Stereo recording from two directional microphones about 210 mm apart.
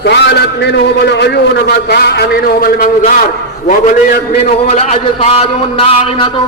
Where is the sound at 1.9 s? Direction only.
50° left (ahead or behind).